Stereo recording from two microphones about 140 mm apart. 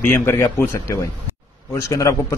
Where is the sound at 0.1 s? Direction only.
15° left (ahead or behind).